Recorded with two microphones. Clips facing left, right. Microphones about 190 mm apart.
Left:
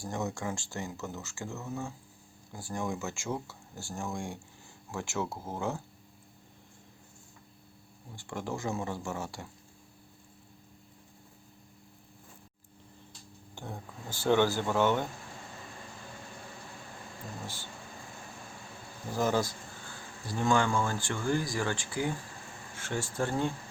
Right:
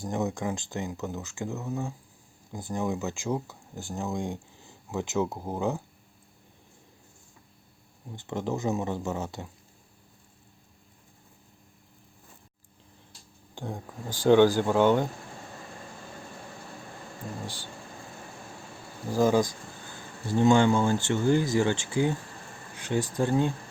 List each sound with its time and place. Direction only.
0.0 s speech: 20° right (ahead or behind)
8.1 s speech: 20° right (ahead or behind)
13.6 s speech: 15° right (ahead or behind)
17.4 s speech: 15° right (ahead or behind)
19.1 s speech: 15° right (ahead or behind)